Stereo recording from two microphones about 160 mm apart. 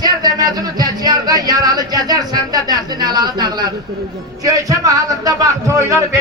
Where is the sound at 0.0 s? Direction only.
25° right (ahead or behind).